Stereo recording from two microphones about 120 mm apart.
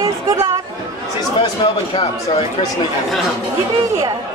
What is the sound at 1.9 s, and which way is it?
Speech, 50° left (ahead or behind).